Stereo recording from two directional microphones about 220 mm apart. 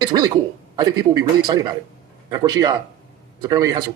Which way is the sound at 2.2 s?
15° right (ahead or behind).